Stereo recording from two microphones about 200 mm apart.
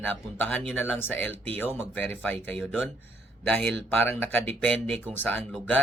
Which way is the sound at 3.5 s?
5° left (ahead or behind).